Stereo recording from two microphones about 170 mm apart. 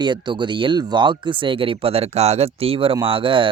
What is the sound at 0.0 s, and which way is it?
Speech, 25° right (ahead or behind).